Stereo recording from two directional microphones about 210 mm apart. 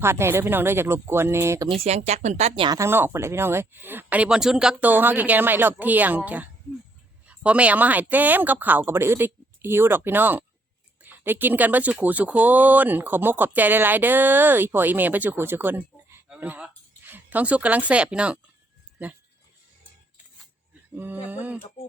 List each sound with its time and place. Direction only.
0.0 s speech: 10° right (ahead or behind)
1.7 s speech: 30° right (ahead or behind)
2.6 s speech: 15° right (ahead or behind)
20.9 s speech: 10° right (ahead or behind)